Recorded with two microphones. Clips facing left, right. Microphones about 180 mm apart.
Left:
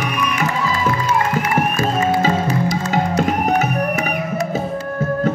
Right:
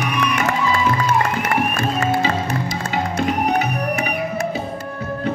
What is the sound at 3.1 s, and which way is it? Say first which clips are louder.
Music: even; 45° left (ahead or behind).